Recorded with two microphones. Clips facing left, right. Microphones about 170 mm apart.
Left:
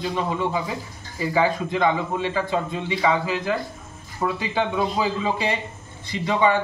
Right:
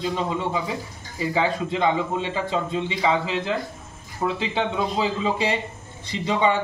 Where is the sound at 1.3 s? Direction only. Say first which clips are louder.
Left 2 dB; 25° right (ahead or behind).